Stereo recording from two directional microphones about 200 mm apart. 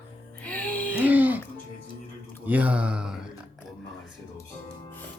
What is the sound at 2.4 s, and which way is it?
Speech, 5° right (ahead or behind).